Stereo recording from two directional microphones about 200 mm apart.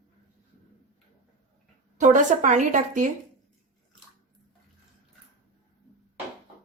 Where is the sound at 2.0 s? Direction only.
40° right (ahead or behind).